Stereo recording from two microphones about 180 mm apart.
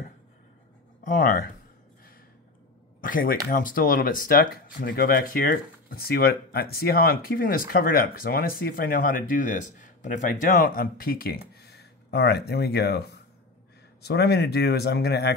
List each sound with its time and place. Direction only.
1.0 s speech: 50° left (ahead or behind)
3.0 s speech: 50° left (ahead or behind); by 15.3 s 65° left (ahead or behind)